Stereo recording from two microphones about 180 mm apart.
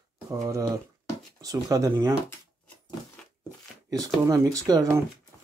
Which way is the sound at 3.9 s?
20° right (ahead or behind).